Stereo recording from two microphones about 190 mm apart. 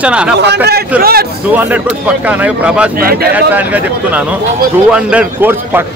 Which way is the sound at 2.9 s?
50° right (ahead or behind).